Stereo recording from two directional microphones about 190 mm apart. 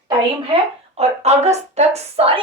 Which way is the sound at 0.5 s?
35° right (ahead or behind).